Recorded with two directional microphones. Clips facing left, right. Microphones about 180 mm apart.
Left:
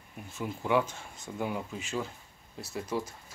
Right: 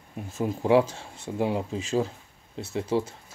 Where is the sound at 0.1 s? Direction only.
40° right (ahead or behind).